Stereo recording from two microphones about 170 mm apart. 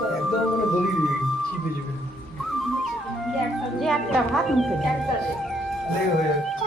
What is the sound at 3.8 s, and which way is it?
Speech, centre (ahead or behind).